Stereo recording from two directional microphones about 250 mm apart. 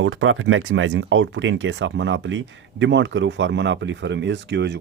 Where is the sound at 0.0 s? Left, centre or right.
Right.